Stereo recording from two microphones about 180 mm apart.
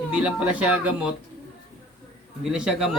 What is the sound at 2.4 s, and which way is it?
Mantra, 5° right (ahead or behind).